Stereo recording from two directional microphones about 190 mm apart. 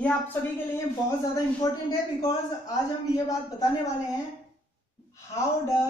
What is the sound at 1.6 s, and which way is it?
A woman's voice, 20° left (ahead or behind).